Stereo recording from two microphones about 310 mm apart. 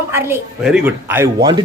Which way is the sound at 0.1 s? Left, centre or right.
Centre.